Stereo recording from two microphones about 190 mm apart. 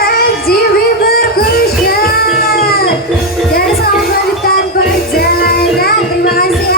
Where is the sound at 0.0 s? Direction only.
55° left (ahead or behind).